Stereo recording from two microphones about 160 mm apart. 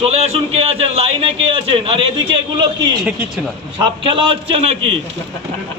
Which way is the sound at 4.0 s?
35° right (ahead or behind).